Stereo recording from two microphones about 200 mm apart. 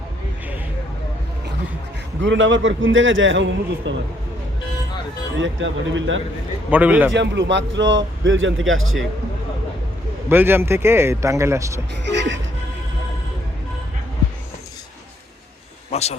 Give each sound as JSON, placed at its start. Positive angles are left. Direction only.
{"t": 2.2, "sound": "a man's voice", "side_deg": -70}
{"t": 5.4, "sound": "a man's voice", "side_deg": -70}
{"t": 6.7, "sound": "a man's voice", "side_deg": -10}
{"t": 7.1, "sound": "a man's voice", "side_deg": -65}
{"t": 10.2, "sound": "a man's voice", "side_deg": -10}
{"t": 12.1, "sound": "music", "side_deg": -65}
{"t": 15.9, "sound": "a sound", "side_deg": 30}